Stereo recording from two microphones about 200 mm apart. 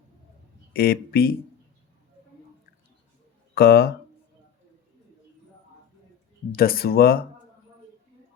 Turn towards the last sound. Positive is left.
turn(degrees=50)  # may be behind; listen again after turning